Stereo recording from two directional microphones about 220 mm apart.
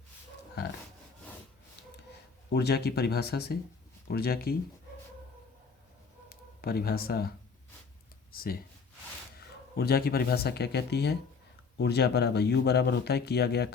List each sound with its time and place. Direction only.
2.5 s speech: 45° left (ahead or behind)
6.2 s speech: 45° left (ahead or behind)
9.7 s speech: 45° left (ahead or behind)